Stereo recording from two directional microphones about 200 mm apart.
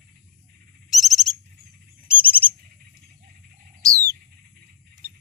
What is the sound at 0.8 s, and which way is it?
Owl, centre (ahead or behind).